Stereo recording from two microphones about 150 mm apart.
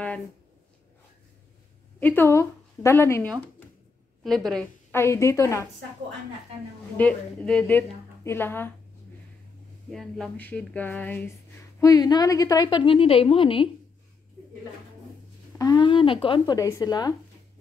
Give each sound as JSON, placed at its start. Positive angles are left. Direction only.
{"t": 2.0, "sound": "a woman's voice", "side_deg": 15}
{"t": 4.2, "sound": "a woman's voice", "side_deg": 0}
{"t": 4.9, "sound": "speech", "side_deg": 20}
{"t": 7.0, "sound": "a woman's voice", "side_deg": 10}
{"t": 9.8, "sound": "a woman's voice", "side_deg": 0}
{"t": 11.8, "sound": "a woman's voice", "side_deg": 25}
{"t": 15.5, "sound": "speech", "side_deg": 25}